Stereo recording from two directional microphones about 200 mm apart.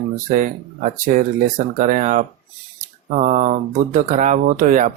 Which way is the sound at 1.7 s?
40° right (ahead or behind).